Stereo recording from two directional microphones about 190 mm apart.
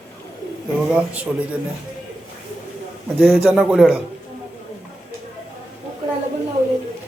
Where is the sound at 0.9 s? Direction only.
5° right (ahead or behind).